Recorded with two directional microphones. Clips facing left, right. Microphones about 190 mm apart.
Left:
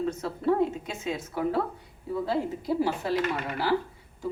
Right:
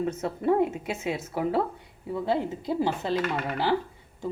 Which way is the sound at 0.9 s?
10° right (ahead or behind).